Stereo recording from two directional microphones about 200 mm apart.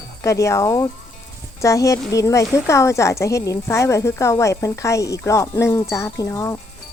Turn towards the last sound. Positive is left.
turn(degrees=15)  # may be behind; listen again after turning